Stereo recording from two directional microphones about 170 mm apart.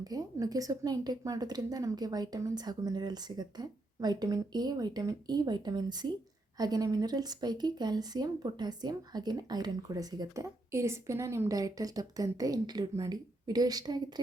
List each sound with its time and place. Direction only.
0.0 s speech: 20° right (ahead or behind)